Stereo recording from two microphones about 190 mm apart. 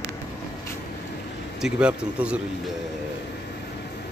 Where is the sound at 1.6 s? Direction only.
5° right (ahead or behind).